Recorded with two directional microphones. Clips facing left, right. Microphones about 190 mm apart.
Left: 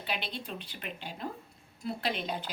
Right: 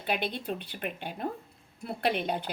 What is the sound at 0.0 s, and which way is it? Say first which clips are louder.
A woman's voice: right 6 dB; 50° right (ahead or behind).